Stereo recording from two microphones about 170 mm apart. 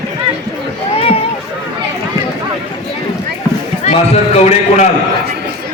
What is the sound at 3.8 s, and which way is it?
A man's voice, 40° left (ahead or behind).